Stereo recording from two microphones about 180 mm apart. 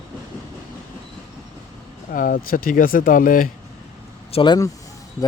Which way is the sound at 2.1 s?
50° left (ahead or behind).